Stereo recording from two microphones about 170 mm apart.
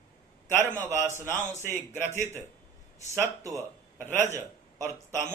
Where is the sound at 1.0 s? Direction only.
15° right (ahead or behind).